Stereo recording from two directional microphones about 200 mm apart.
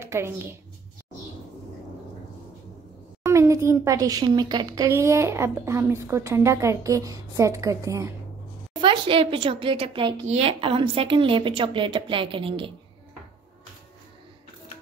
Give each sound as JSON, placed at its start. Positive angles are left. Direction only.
{"t": 0.0, "sound": "a woman's voice", "side_deg": -15}
{"t": 3.3, "sound": "a woman's voice", "side_deg": -15}